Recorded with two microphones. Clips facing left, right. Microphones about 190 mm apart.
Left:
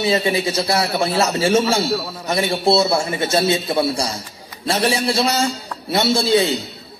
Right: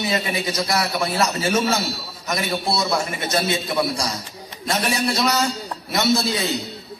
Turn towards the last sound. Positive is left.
turn(degrees=30)  # may be behind; listen again after turning